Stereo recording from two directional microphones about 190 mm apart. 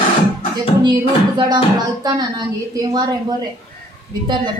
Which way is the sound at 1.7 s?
20° right (ahead or behind).